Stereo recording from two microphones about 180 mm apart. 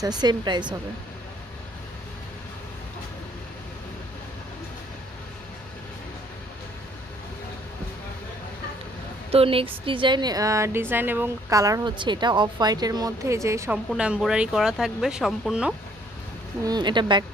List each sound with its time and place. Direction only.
0.0 s a woman's voice: 25° right (ahead or behind)
9.3 s a woman's voice: 30° right (ahead or behind); by 13.7 s 15° right (ahead or behind)
13.8 s speech: 5° right (ahead or behind)
16.6 s a woman's voice: 25° right (ahead or behind)